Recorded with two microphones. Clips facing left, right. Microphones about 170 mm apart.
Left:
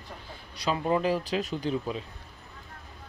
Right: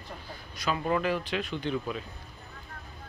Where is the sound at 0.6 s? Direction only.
25° left (ahead or behind).